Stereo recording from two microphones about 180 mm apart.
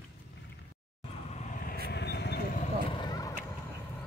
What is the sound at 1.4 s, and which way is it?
Vehicle, 55° left (ahead or behind).